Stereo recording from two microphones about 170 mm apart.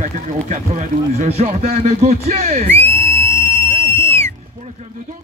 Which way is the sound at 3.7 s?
30° right (ahead or behind).